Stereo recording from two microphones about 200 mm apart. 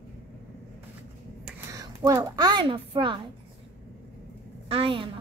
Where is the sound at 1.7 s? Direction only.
15° right (ahead or behind).